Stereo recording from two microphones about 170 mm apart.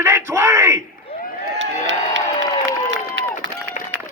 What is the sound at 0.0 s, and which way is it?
Bellow, 15° right (ahead or behind).